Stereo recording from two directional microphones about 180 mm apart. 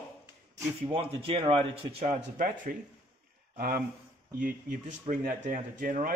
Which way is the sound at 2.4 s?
50° right (ahead or behind).